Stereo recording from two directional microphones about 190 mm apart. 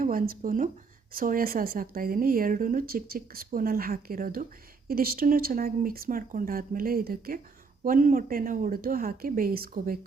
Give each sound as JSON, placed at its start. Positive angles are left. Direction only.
{"t": 0.0, "sound": "a woman's voice", "side_deg": -45}